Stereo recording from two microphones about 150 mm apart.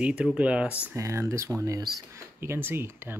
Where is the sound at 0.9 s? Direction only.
20° right (ahead or behind).